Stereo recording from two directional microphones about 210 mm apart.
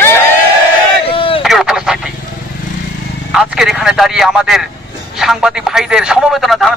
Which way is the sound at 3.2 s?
Centre (ahead or behind).